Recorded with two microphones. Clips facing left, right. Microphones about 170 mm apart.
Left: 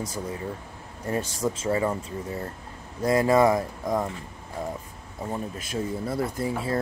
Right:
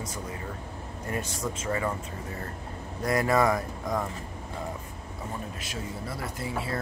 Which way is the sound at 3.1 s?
25° left (ahead or behind).